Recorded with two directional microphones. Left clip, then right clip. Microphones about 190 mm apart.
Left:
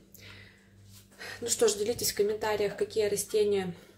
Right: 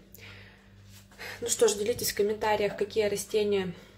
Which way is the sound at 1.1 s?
Centre (ahead or behind).